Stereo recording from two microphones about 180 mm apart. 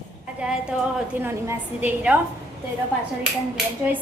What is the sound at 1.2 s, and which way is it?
Speech, 10° right (ahead or behind).